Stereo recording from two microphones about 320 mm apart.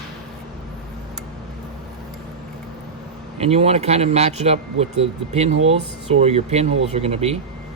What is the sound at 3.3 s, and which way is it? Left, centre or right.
Speech, centre.